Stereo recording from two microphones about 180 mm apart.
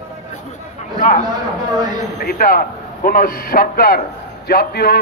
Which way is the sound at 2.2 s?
55° left (ahead or behind).